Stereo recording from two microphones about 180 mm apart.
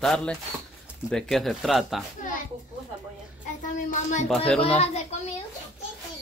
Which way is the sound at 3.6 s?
45° left (ahead or behind).